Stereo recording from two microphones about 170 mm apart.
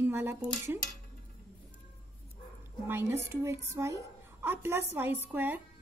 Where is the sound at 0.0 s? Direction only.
15° right (ahead or behind).